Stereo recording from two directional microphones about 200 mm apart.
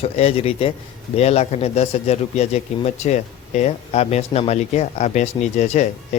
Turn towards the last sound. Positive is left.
turn(degrees=35)  # may be behind; listen again after turning